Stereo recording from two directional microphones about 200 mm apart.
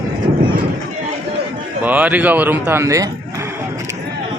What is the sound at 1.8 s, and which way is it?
Speech, 5° right (ahead or behind).